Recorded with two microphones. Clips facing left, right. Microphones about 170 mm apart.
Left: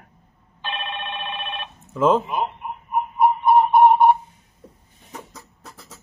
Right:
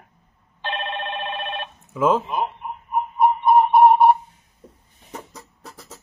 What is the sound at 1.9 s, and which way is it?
Speech, 5° right (ahead or behind).